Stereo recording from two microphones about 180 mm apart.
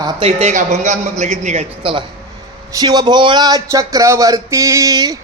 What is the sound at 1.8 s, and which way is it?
Speech, 30° right (ahead or behind).